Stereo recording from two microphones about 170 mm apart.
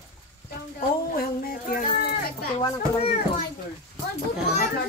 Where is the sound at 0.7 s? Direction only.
60° left (ahead or behind).